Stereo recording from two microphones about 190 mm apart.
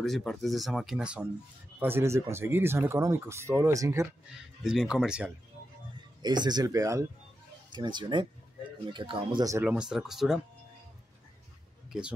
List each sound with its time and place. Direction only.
0.0 s speech: centre (ahead or behind); by 4.1 s 15° right (ahead or behind)
4.6 s speech: 5° right (ahead or behind)
6.2 s speech: 20° right (ahead or behind); by 10.4 s centre (ahead or behind)